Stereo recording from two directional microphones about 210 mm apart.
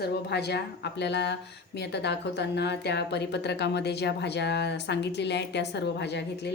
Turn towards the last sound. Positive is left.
turn(degrees=55)  # may be behind; listen again after turning